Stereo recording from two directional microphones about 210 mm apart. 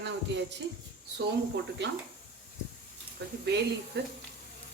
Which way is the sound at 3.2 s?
50° right (ahead or behind).